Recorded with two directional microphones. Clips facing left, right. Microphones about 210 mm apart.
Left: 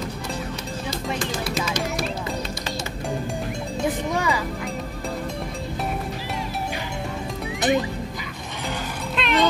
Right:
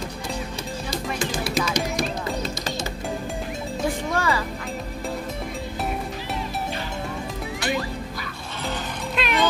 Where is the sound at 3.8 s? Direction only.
15° left (ahead or behind).